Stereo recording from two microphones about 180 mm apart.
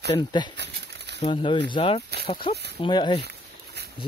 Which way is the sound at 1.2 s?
30° left (ahead or behind).